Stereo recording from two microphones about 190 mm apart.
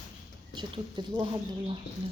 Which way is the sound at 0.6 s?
25° right (ahead or behind).